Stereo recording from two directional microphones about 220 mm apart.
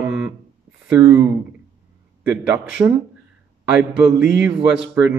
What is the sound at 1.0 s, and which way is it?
Speech, 20° right (ahead or behind).